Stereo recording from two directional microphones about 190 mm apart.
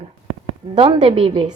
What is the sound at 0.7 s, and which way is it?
Speech, 25° right (ahead or behind).